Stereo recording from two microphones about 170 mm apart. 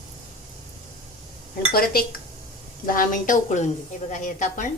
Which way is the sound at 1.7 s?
60° left (ahead or behind).